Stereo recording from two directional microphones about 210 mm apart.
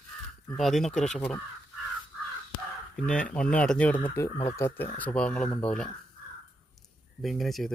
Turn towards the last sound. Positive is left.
turn(degrees=0)  # may be behind; listen again after turning